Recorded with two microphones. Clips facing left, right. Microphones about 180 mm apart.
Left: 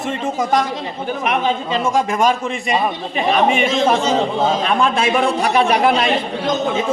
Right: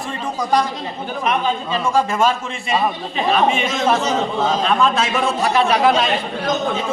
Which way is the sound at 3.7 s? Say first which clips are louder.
Left 2 dB; 30° left (ahead or behind).